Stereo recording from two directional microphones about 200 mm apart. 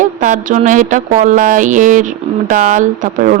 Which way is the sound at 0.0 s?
40° right (ahead or behind).